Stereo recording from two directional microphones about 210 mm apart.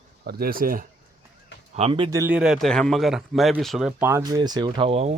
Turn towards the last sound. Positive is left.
turn(degrees=-30)  # may be behind; listen again after turning